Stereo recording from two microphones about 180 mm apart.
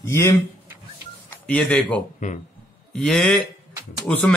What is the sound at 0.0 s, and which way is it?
Speech, 15° left (ahead or behind).